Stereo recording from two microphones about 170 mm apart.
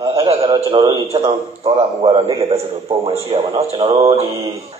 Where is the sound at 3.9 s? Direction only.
20° right (ahead or behind).